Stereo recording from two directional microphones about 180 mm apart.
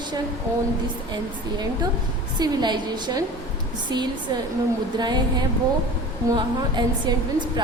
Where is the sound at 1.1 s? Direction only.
25° right (ahead or behind).